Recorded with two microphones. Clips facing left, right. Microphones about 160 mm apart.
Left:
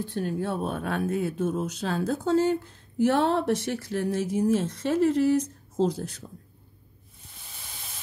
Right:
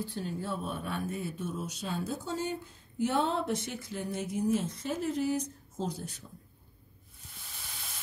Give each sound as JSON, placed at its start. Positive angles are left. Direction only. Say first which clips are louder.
{"t": 0.1, "sound": "speech", "louder": "left 7 dB", "side_deg": 65}
{"t": 1.7, "sound": "speech", "louder": "left 7 dB", "side_deg": 90}